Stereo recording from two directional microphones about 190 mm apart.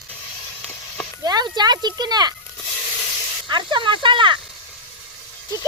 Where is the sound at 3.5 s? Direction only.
25° right (ahead or behind).